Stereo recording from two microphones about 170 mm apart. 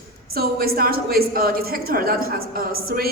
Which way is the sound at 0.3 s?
60° right (ahead or behind).